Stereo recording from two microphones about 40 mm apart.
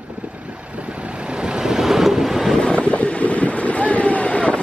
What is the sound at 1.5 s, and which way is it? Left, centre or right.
Vehicle, centre.